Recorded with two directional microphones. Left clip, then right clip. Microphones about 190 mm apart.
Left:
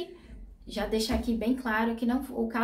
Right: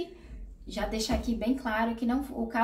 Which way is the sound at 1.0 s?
20° left (ahead or behind).